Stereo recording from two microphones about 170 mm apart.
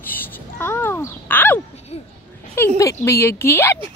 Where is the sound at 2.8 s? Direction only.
20° left (ahead or behind).